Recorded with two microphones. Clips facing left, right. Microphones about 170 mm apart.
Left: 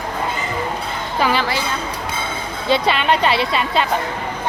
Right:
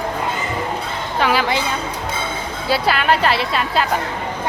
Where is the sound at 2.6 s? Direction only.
5° right (ahead or behind).